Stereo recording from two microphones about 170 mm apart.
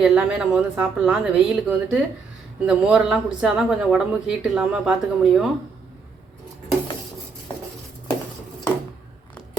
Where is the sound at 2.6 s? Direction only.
5° right (ahead or behind).